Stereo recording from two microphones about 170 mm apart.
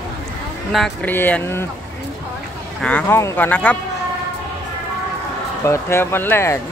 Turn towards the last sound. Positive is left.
turn(degrees=15)  # may be behind; listen again after turning